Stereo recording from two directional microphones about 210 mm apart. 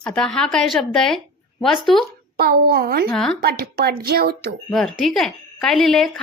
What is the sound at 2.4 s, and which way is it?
Speech, 45° right (ahead or behind).